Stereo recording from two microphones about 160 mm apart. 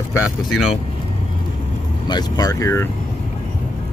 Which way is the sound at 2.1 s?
25° left (ahead or behind).